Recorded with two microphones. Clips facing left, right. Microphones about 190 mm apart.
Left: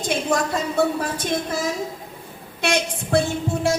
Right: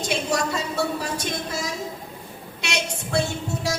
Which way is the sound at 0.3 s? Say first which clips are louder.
Left 3 dB; 55° left (ahead or behind).